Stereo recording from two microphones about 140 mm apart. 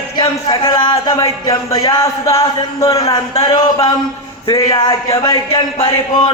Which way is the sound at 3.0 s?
45° left (ahead or behind).